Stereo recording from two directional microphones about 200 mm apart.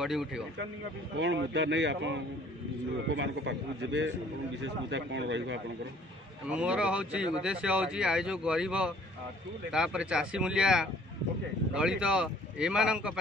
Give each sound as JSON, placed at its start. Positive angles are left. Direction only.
{"t": 0.0, "sound": "speech", "side_deg": 0}
{"t": 1.1, "sound": "speech", "side_deg": -65}
{"t": 6.5, "sound": "speech", "side_deg": -5}